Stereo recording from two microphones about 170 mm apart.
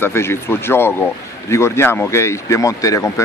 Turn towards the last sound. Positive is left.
turn(degrees=20)  # may be behind; listen again after turning